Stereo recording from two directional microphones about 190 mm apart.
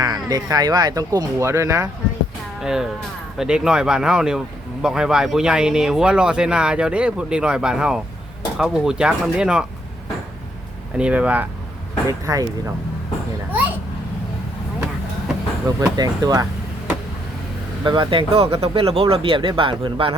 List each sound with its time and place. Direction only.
0.3 s speech: 20° right (ahead or behind)
2.6 s speech: 5° right (ahead or behind)
10.9 s speech: 5° right (ahead or behind)
12.0 s speech: 15° right (ahead or behind)
15.6 s speech: 20° right (ahead or behind)
17.8 s speech: 25° right (ahead or behind)